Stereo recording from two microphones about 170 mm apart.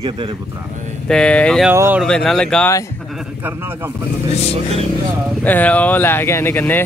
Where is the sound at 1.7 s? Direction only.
15° right (ahead or behind).